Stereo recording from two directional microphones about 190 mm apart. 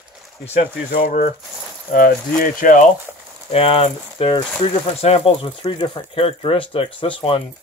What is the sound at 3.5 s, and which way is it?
Speech, 30° left (ahead or behind).